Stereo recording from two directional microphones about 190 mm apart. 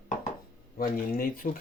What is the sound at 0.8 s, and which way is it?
Speech, 50° left (ahead or behind).